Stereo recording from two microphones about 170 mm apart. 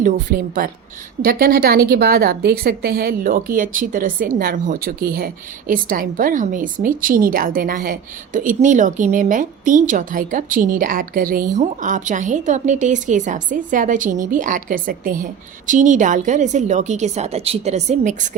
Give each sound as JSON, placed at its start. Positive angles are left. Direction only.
{"t": 0.0, "sound": "a woman's voice", "side_deg": -55}
{"t": 11.5, "sound": "a woman's voice", "side_deg": -45}